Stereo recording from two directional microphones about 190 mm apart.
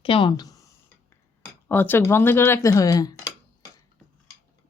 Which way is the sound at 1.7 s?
10° left (ahead or behind).